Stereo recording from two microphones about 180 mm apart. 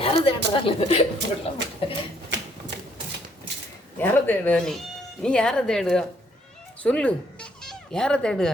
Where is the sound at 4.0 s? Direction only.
10° left (ahead or behind).